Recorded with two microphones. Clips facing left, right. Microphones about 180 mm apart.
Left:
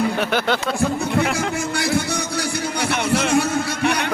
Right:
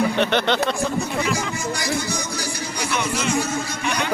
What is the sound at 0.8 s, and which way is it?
Speech, 60° left (ahead or behind).